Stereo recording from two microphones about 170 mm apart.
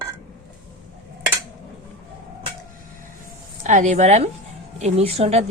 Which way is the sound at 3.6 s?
45° right (ahead or behind).